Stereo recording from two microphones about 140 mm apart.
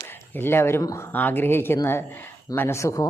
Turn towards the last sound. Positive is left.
turn(degrees=20)  # may be behind; listen again after turning